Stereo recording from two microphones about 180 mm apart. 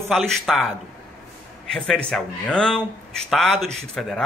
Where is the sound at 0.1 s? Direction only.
Centre (ahead or behind).